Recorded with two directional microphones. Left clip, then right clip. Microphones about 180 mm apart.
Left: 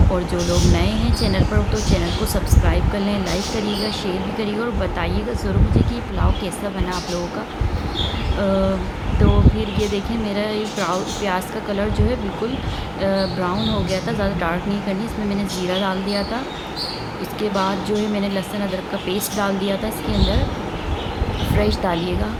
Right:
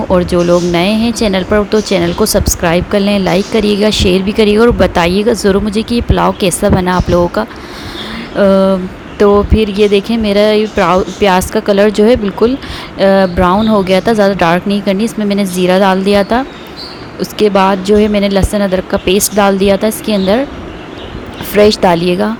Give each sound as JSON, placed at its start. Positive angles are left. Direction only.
{"t": 0.1, "sound": "speech", "side_deg": -45}
{"t": 21.6, "sound": "speech", "side_deg": -50}